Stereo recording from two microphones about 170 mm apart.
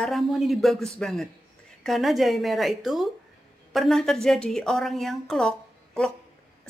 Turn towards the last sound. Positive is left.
turn(degrees=5)  # may be behind; listen again after turning